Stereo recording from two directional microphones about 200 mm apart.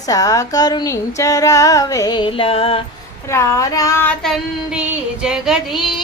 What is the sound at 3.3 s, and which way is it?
Child singing, 15° left (ahead or behind).